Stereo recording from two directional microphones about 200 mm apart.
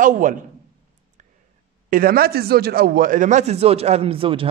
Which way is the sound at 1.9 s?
50° right (ahead or behind).